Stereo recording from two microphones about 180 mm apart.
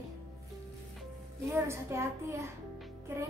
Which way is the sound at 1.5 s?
15° right (ahead or behind).